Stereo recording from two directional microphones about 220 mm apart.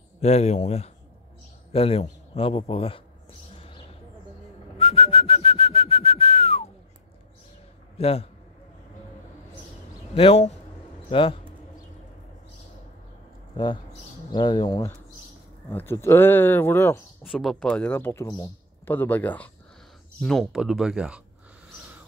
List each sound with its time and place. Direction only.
0.2 s a man's voice: 30° left (ahead or behind)
4.7 s whistling: 25° left (ahead or behind)
8.0 s a man's voice: 25° left (ahead or behind)
10.1 s a man's voice: 30° left (ahead or behind)
14.3 s a man's voice: 20° left (ahead or behind)
17.3 s speech: centre (ahead or behind)